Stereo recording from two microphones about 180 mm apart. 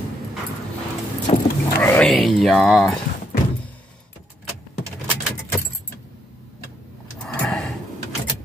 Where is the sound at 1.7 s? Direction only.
10° left (ahead or behind).